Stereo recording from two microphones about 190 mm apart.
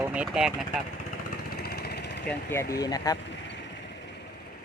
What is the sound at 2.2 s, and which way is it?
Speech, 10° left (ahead or behind).